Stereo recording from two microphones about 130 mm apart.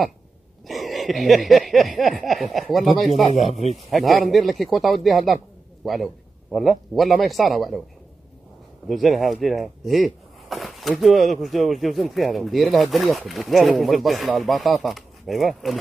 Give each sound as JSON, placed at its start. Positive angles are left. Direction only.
{"t": 0.7, "sound": "speech", "side_deg": 0}
{"t": 3.3, "sound": "speech", "side_deg": 55}
{"t": 3.9, "sound": "speech", "side_deg": 0}
{"t": 8.8, "sound": "speech", "side_deg": 0}